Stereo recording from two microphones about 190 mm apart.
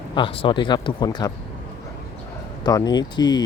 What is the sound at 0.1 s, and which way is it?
Speech, 25° left (ahead or behind).